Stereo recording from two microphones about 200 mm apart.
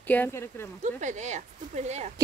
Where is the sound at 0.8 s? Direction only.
35° right (ahead or behind).